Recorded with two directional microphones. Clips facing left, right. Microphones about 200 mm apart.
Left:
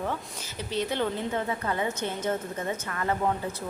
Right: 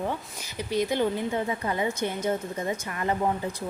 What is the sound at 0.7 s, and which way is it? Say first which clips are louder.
A woman's voice: right 3 dB; 10° right (ahead or behind).